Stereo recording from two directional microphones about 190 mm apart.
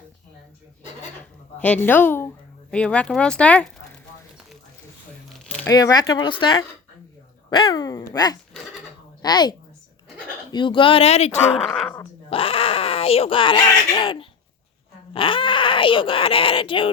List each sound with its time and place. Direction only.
1.5 s speech: 10° left (ahead or behind)
5.6 s speech: 20° left (ahead or behind); by 11.3 s 35° left (ahead or behind)
11.5 s speech: centre (ahead or behind)
11.9 s speech: 30° left (ahead or behind)